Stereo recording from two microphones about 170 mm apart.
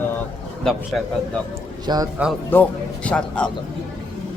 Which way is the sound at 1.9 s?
25° right (ahead or behind).